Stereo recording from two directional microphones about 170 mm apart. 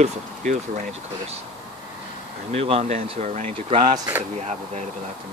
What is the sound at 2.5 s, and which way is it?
Speech, 35° right (ahead or behind).